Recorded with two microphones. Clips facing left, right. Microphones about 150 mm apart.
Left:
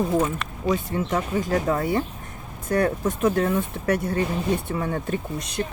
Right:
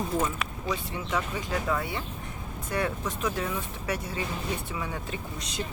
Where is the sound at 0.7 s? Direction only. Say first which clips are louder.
Left 8 dB; 45° left (ahead or behind).